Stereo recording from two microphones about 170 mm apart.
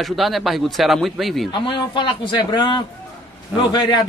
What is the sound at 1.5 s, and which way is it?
Speech, 30° left (ahead or behind).